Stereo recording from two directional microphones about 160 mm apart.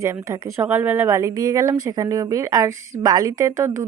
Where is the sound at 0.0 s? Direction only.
20° right (ahead or behind).